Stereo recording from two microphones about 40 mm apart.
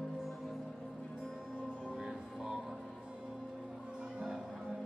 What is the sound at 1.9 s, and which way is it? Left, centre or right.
Music, centre.